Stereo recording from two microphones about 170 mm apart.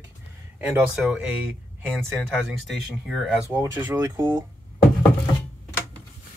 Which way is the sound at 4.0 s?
25° right (ahead or behind).